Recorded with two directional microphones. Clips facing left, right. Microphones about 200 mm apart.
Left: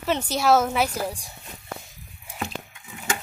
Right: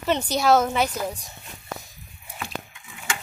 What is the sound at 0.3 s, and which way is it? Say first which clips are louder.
Speech: even; 5° left (ahead or behind).